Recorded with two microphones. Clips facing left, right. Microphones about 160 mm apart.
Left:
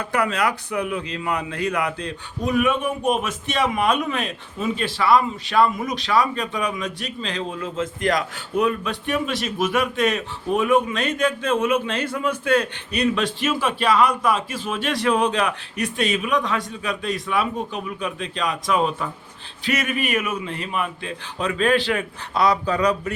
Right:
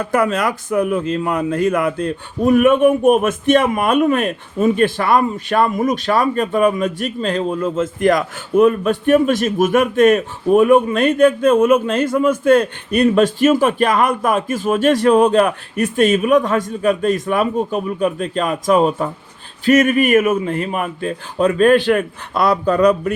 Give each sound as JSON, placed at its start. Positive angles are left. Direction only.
{"t": 0.0, "sound": "speech", "side_deg": -45}